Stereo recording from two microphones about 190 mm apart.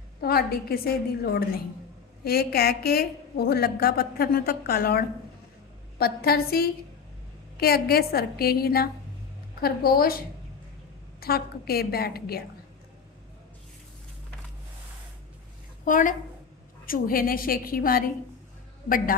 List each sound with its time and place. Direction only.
0.2 s a woman's voice: 55° left (ahead or behind)
15.8 s a woman's voice: 45° left (ahead or behind)